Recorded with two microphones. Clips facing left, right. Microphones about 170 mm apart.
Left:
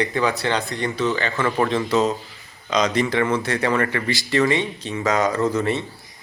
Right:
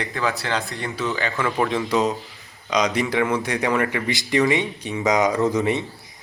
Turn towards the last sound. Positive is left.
turn(degrees=-15)  # may be behind; listen again after turning